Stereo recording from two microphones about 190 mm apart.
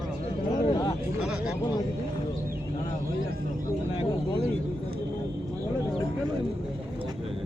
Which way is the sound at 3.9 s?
30° left (ahead or behind).